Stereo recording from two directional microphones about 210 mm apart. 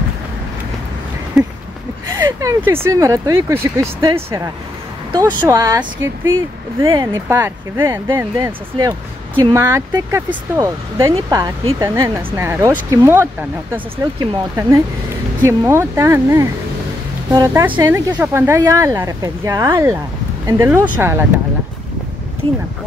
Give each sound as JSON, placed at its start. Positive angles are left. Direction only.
{"t": 2.0, "sound": "speech", "side_deg": -15}
{"t": 5.4, "sound": "speech", "side_deg": -15}